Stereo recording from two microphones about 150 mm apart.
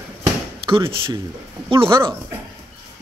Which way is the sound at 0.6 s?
35° right (ahead or behind).